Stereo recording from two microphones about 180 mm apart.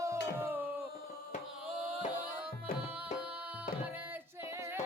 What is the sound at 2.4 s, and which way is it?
Music, 10° right (ahead or behind).